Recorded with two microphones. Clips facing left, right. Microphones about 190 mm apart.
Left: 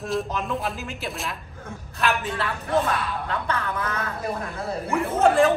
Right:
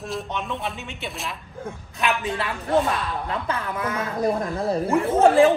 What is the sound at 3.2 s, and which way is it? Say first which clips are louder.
Speech: even; 25° right (ahead or behind).